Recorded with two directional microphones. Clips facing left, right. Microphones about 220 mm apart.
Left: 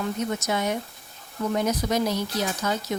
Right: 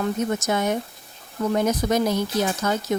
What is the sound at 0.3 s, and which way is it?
Speech, 50° right (ahead or behind).